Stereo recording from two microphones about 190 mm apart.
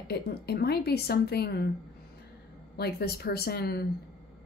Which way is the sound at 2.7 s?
55° left (ahead or behind).